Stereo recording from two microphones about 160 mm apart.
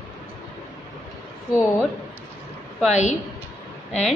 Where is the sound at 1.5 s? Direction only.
10° left (ahead or behind).